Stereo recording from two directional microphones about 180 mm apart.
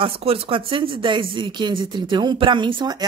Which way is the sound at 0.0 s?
30° right (ahead or behind).